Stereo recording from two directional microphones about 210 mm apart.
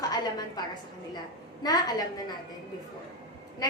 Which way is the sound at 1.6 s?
20° left (ahead or behind).